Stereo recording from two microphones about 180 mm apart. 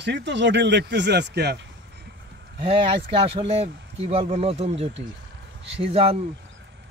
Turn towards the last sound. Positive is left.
turn(degrees=-30)  # may be behind; listen again after turning